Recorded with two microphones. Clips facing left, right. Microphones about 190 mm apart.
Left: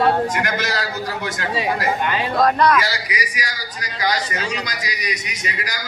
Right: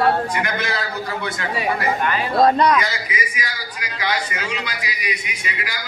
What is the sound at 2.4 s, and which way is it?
Speech, 20° right (ahead or behind).